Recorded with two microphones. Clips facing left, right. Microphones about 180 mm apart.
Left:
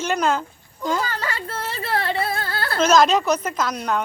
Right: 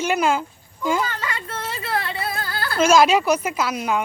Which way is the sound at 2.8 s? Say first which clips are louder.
Right 1 dB; 10° right (ahead or behind).